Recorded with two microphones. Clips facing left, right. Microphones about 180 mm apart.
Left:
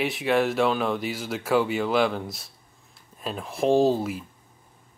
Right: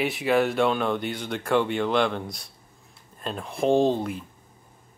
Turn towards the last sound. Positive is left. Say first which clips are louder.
# left 1 dB
turn(degrees=5)  # may be behind; listen again after turning